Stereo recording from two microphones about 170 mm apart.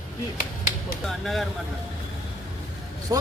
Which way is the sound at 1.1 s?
Centre (ahead or behind).